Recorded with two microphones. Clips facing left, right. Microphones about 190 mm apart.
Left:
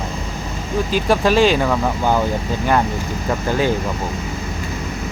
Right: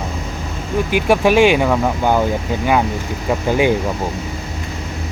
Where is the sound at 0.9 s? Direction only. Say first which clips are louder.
Right 3 dB; 10° right (ahead or behind).